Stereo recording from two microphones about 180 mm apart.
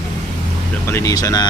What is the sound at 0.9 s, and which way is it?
Speech, 20° left (ahead or behind).